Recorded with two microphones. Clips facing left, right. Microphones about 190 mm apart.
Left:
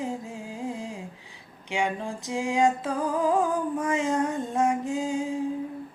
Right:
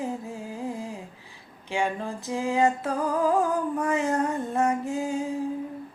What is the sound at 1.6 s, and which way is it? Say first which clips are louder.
Music: right 1 dB; 15° left (ahead or behind).